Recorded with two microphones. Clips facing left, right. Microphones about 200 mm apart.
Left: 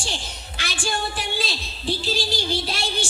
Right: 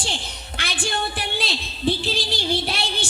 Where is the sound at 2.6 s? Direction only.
60° right (ahead or behind).